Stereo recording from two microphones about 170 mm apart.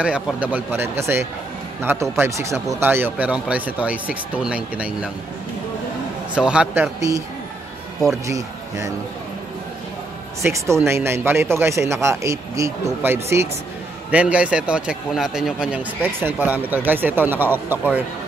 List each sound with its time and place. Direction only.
0.0 s speech: 5° right (ahead or behind)
6.3 s speech: 5° right (ahead or behind)
8.3 s speech: 20° right (ahead or behind)
10.4 s speech: 15° right (ahead or behind)